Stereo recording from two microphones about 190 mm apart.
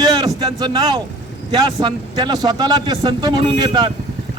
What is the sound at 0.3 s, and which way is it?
Speech, 20° right (ahead or behind).